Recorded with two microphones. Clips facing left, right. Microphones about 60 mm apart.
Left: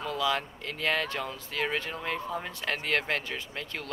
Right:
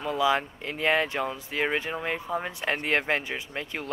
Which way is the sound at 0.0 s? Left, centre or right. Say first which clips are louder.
Right 5 dB; centre.